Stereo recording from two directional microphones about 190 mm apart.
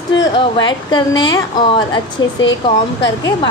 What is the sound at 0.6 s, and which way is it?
Speech, 25° left (ahead or behind).